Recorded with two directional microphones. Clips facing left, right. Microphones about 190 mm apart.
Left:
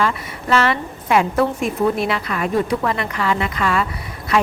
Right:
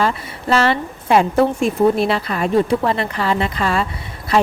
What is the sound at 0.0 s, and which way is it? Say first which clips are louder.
Speech: right 2 dB; 30° right (ahead or behind).